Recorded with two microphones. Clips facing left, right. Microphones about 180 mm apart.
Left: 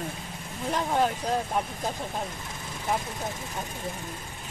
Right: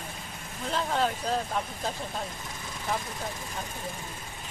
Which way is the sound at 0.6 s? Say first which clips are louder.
Left 2 dB; 15° left (ahead or behind).